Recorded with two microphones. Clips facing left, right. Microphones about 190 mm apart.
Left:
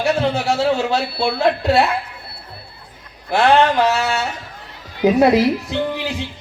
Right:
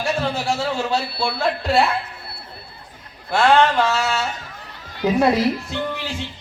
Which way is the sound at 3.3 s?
20° left (ahead or behind).